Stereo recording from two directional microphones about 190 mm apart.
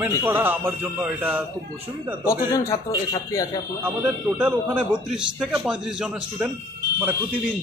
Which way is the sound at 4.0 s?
5° right (ahead or behind).